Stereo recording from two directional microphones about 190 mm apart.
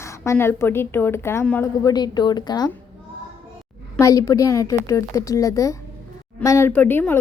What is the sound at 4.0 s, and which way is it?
A woman's voice, 15° left (ahead or behind).